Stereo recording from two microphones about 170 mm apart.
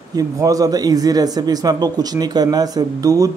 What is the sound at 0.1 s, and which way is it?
Speech, 20° right (ahead or behind).